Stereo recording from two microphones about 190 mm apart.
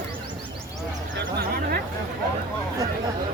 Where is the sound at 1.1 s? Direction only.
60° right (ahead or behind).